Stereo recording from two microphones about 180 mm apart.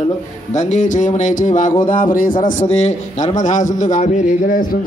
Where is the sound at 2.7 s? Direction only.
35° left (ahead or behind).